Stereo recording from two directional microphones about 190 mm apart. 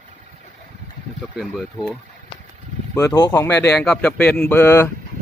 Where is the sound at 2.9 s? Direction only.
15° left (ahead or behind).